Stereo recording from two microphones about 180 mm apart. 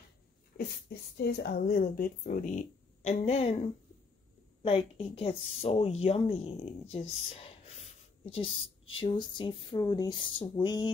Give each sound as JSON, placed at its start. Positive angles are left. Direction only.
{"t": 0.6, "sound": "speech", "side_deg": 65}
{"t": 8.9, "sound": "speech", "side_deg": 30}